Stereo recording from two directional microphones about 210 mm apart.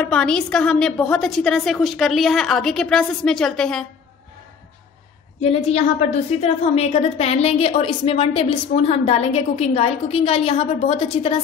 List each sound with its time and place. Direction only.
0.0 s a woman's voice: 5° left (ahead or behind)
5.4 s a woman's voice: 30° left (ahead or behind)